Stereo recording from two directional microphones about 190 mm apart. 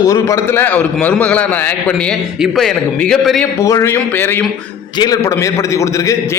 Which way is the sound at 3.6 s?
15° left (ahead or behind).